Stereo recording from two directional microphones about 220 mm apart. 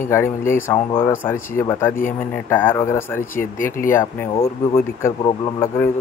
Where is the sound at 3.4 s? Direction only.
40° left (ahead or behind).